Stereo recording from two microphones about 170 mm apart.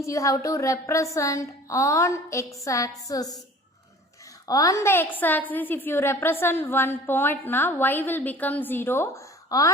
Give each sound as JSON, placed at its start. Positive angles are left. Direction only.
{"t": 0.0, "sound": "a woman's voice", "side_deg": 20}
{"t": 4.4, "sound": "a woman's voice", "side_deg": 20}